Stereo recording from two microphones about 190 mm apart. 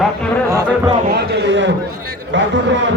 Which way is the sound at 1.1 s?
60° right (ahead or behind).